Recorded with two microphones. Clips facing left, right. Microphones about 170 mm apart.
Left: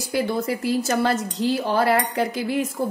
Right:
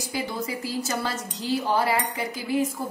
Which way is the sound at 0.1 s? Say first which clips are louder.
Left 8 dB; 65° left (ahead or behind).